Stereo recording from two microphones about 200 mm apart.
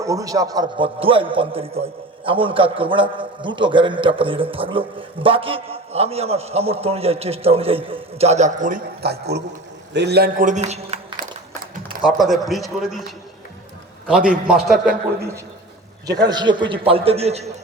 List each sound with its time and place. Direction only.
0.0 s a man's voice: 15° right (ahead or behind); by 11.3 s 35° right (ahead or behind)
12.0 s a man's voice: centre (ahead or behind)
14.3 s a man's voice: 5° right (ahead or behind)
16.0 s a man's voice: 20° right (ahead or behind)